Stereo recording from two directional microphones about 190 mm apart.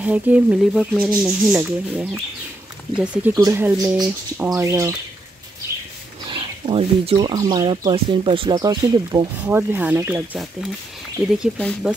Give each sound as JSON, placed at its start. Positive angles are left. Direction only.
{"t": 0.0, "sound": "speech", "side_deg": -5}
{"t": 3.3, "sound": "speech", "side_deg": -20}
{"t": 3.6, "sound": "speech", "side_deg": -5}
{"t": 4.6, "sound": "speech", "side_deg": -15}
{"t": 6.3, "sound": "speech", "side_deg": -30}